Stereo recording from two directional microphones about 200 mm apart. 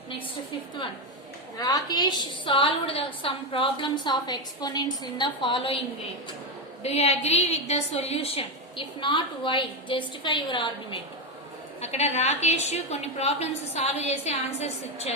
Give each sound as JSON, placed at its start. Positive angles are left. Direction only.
{"t": 1.5, "sound": "a woman's voice", "side_deg": 20}
{"t": 6.8, "sound": "a woman's voice", "side_deg": 30}